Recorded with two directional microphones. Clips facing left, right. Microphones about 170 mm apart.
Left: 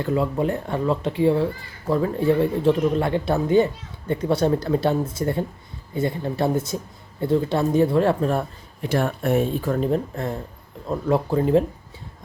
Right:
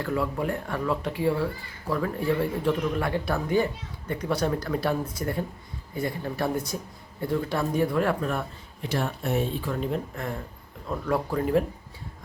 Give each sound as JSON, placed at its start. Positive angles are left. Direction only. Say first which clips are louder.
{"t": 0.0, "sound": "speech", "louder": "left 5 dB", "side_deg": 25}
{"t": 8.8, "sound": "speech", "louder": "left 6 dB", "side_deg": 55}
{"t": 10.8, "sound": "speech", "louder": "left 5 dB", "side_deg": 25}